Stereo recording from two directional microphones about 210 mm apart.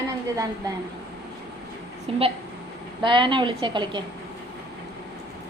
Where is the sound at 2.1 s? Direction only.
25° right (ahead or behind).